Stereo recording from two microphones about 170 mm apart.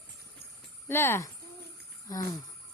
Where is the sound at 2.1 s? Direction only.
20° left (ahead or behind).